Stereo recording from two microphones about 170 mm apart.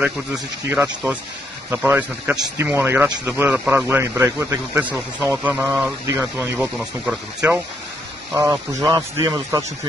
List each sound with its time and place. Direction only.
0.7 s a man's voice: 15° right (ahead or behind)
6.8 s speech: 5° right (ahead or behind)
8.4 s speech: 20° right (ahead or behind)